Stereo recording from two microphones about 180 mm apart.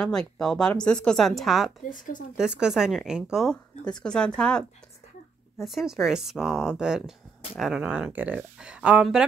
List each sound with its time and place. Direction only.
0.0 s speech: 5° left (ahead or behind)
1.8 s speech: 45° left (ahead or behind)
2.3 s speech: 5° right (ahead or behind)